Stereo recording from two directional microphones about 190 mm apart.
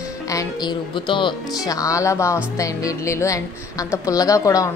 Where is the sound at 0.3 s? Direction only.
20° left (ahead or behind).